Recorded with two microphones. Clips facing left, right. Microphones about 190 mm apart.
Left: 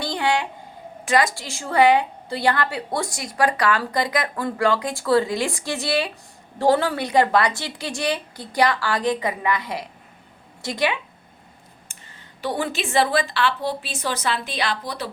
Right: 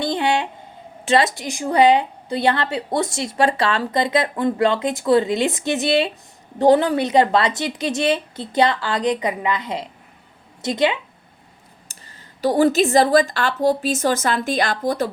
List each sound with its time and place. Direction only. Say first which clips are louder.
0.0 s a sound: right 3 dB; 20° right (ahead or behind)
1.0 s a woman's voice: right 3 dB; 25° right (ahead or behind)
11.9 s a woman's voice: right 1 dB; 40° right (ahead or behind)